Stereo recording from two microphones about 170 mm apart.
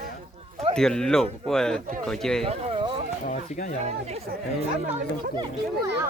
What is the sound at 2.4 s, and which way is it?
Speech, 35° right (ahead or behind).